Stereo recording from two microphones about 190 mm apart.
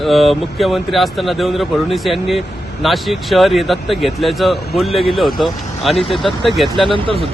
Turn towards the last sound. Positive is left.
turn(degrees=-30)  # may be behind; listen again after turning